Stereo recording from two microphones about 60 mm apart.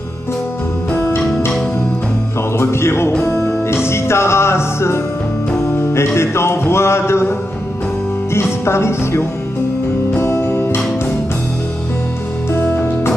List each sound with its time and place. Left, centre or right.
0.9 s music: left
2.5 s music: left
12.5 s music: left